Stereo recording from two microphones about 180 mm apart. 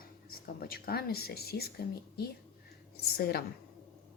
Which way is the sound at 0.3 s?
55° left (ahead or behind).